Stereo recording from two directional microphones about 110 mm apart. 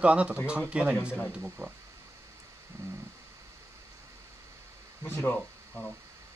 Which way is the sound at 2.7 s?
25° right (ahead or behind).